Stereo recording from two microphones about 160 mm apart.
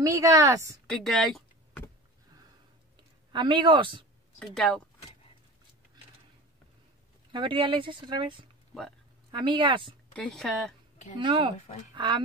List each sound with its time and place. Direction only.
0.0 s a woman's voice: 20° right (ahead or behind)
0.8 s typing: centre (ahead or behind)
3.3 s speech: 30° right (ahead or behind)
4.4 s speech: 5° left (ahead or behind)
7.3 s speech: 30° right (ahead or behind)
10.1 s speech: 5° left (ahead or behind)
11.1 s speech: 30° right (ahead or behind)